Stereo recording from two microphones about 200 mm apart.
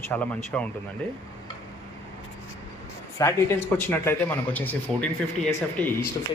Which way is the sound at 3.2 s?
15° left (ahead or behind).